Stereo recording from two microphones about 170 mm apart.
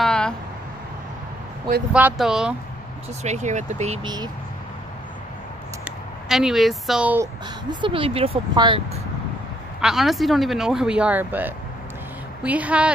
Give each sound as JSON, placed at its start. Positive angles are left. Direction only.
{"t": 0.0, "sound": "a sound", "side_deg": 5}
{"t": 2.0, "sound": "speech", "side_deg": -5}
{"t": 3.3, "sound": "speech", "side_deg": -45}
{"t": 4.0, "sound": "speech", "side_deg": -25}
{"t": 5.9, "sound": "speech", "side_deg": 0}
{"t": 7.8, "sound": "speech", "side_deg": -30}
{"t": 9.8, "sound": "speech", "side_deg": -5}